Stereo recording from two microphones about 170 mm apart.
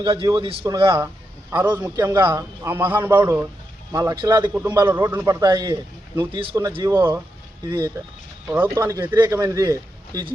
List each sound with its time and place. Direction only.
0.0 s a man's voice: 30° right (ahead or behind)
1.5 s a man's voice: 10° right (ahead or behind)
4.7 s a man's voice: 15° right (ahead or behind); by 6.6 s 30° right (ahead or behind)
6.8 s a man's voice: 15° right (ahead or behind)
8.4 s a man's voice: 15° right (ahead or behind)